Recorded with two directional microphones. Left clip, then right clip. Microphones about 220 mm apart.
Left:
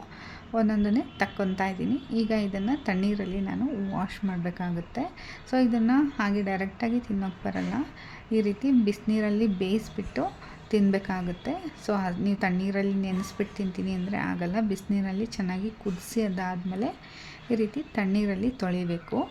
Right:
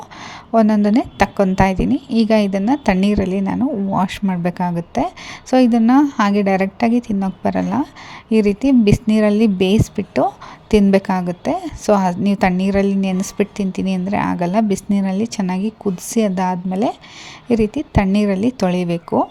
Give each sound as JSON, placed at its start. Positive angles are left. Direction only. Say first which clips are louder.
{"t": 0.5, "sound": "a woman's voice", "louder": "right 12 dB", "side_deg": -35}